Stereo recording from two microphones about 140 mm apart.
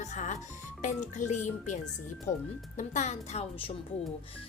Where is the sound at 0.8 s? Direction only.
60° left (ahead or behind).